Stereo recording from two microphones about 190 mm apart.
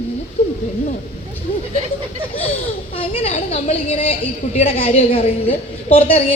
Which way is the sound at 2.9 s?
30° left (ahead or behind).